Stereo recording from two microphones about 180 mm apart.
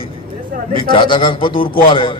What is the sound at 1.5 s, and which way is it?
Speech, 50° left (ahead or behind).